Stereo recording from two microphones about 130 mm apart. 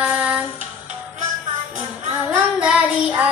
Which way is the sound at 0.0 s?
10° right (ahead or behind).